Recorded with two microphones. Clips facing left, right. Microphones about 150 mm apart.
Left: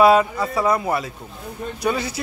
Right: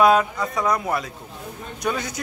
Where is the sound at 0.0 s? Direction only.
5° left (ahead or behind).